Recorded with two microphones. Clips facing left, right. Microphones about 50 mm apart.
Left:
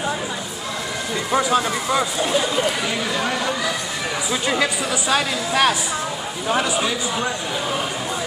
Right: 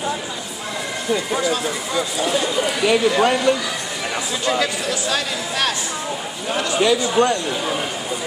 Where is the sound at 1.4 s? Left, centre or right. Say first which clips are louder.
Left 2 dB; left.